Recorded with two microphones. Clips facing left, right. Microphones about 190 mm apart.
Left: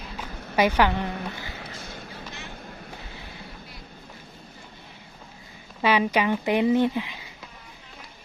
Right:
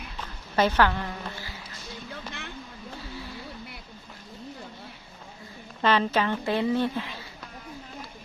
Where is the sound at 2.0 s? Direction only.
60° right (ahead or behind).